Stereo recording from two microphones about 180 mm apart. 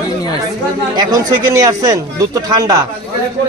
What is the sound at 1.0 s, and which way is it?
A man's voice, 20° right (ahead or behind).